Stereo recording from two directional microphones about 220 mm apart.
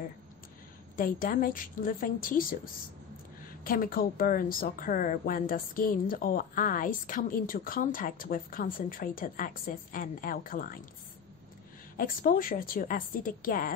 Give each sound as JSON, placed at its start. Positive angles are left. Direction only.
{"t": 0.9, "sound": "a woman's voice", "side_deg": 40}
{"t": 12.0, "sound": "a woman's voice", "side_deg": 40}